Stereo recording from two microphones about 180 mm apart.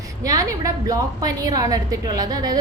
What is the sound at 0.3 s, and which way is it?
A woman's voice, 20° right (ahead or behind).